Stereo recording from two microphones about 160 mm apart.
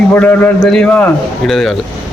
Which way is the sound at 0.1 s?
10° left (ahead or behind).